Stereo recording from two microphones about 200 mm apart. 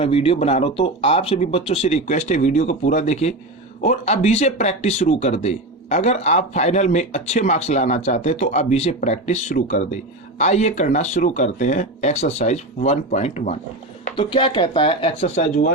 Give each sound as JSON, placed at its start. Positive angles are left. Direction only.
{"t": 0.0, "sound": "speech", "side_deg": 30}